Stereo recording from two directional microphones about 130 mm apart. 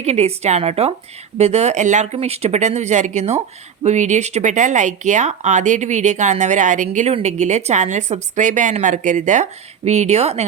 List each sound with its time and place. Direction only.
0.0 s a woman's voice: 55° right (ahead or behind)
2.1 s a woman's voice: 55° right (ahead or behind); by 7.1 s 70° right (ahead or behind)
7.1 s a woman's voice: 60° right (ahead or behind)